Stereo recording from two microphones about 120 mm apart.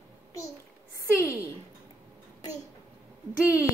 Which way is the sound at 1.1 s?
15° right (ahead or behind).